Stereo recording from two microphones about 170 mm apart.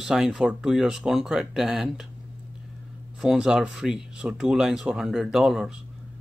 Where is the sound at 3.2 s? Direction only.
5° right (ahead or behind).